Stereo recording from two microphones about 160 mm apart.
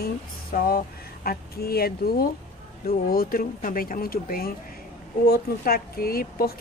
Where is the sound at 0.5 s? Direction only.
70° left (ahead or behind).